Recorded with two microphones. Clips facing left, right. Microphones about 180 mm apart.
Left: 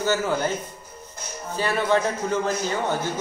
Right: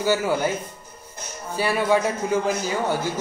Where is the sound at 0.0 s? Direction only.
10° right (ahead or behind).